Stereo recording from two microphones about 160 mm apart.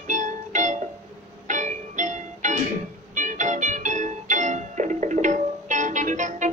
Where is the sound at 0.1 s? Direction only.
50° right (ahead or behind).